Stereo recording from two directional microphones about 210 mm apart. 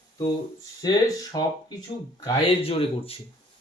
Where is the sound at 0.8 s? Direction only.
20° left (ahead or behind).